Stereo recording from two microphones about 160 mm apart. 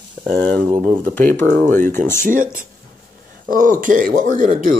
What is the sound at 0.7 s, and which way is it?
Speech, 10° right (ahead or behind).